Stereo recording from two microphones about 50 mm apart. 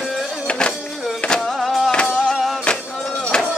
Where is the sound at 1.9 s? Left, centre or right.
Centre.